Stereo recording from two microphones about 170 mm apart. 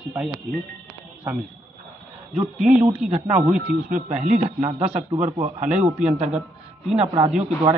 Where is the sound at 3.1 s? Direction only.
40° right (ahead or behind).